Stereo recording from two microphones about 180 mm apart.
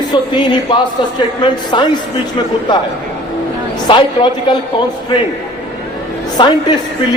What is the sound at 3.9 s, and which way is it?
Speech, 25° left (ahead or behind).